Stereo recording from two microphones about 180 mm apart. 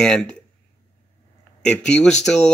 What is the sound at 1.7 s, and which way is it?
Speech, 5° left (ahead or behind).